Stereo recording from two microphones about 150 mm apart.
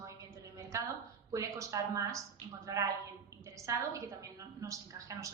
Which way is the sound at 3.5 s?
20° right (ahead or behind).